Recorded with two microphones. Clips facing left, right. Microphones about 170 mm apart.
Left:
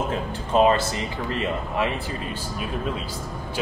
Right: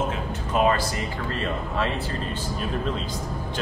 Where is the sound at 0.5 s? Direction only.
25° left (ahead or behind).